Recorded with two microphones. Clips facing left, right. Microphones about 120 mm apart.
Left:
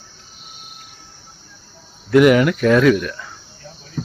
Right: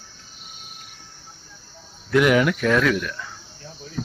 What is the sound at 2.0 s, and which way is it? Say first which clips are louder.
Speech: left 5 dB; 5° left (ahead or behind).